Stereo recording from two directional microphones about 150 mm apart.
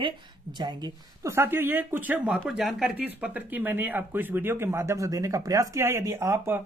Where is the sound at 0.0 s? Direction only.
30° right (ahead or behind).